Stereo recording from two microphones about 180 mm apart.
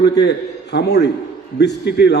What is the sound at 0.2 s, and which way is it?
A man's voice, 70° left (ahead or behind).